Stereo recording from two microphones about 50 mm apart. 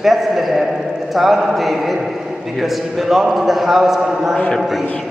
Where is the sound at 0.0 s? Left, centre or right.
Centre.